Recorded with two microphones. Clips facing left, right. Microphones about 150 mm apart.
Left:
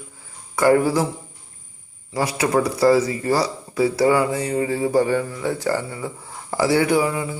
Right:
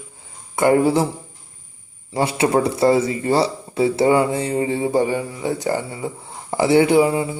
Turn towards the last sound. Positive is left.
turn(degrees=-25)  # may be behind; listen again after turning